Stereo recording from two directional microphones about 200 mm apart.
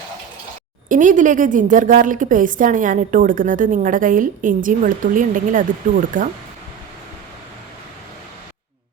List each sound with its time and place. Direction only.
0.9 s a woman's voice: 40° right (ahead or behind)